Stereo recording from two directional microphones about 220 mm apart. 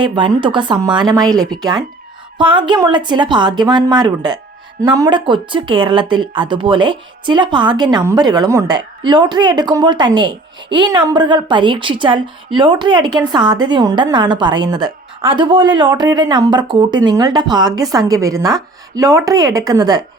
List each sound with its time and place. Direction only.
0.0 s speech: 20° right (ahead or behind)